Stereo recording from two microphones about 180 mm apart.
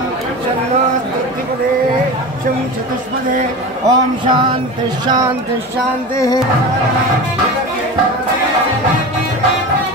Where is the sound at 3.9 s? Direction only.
25° right (ahead or behind).